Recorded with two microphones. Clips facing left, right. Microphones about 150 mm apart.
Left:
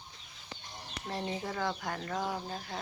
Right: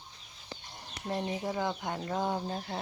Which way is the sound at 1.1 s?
15° right (ahead or behind).